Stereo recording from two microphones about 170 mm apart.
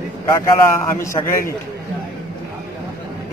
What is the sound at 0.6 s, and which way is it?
Speech, 15° left (ahead or behind).